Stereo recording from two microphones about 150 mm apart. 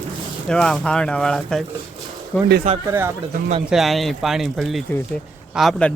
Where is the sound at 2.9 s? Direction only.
15° right (ahead or behind).